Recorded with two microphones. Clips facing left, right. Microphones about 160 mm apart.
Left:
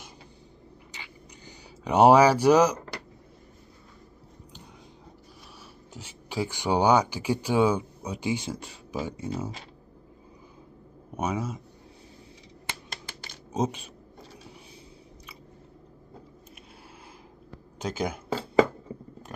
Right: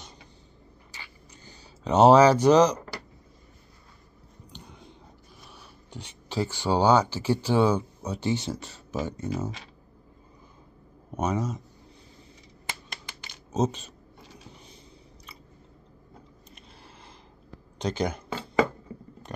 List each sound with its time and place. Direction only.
0.9 s a sound: 15° left (ahead or behind)
5.9 s speech: 10° left (ahead or behind)
11.1 s speech: 10° left (ahead or behind)
12.9 s typing: 35° left (ahead or behind)
13.5 s speech: 10° left (ahead or behind)
17.7 s speech: 5° left (ahead or behind)